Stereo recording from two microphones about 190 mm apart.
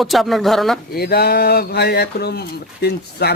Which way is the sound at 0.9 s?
55° left (ahead or behind).